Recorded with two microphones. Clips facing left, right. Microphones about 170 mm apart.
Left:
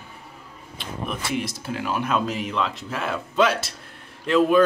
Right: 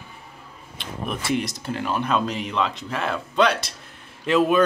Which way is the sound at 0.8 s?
5° left (ahead or behind).